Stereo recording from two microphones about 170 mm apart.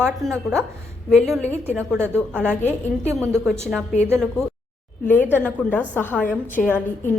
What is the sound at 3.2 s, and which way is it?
Speech, centre (ahead or behind).